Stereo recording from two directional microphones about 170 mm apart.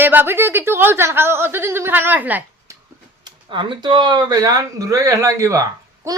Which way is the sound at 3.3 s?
25° right (ahead or behind).